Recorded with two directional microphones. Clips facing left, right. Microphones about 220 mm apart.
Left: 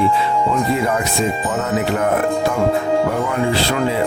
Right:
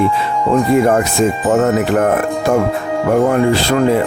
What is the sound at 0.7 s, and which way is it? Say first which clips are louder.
Speech: right 7 dB; 50° right (ahead or behind).